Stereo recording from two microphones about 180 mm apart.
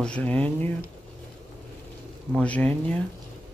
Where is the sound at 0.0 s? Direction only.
5° left (ahead or behind).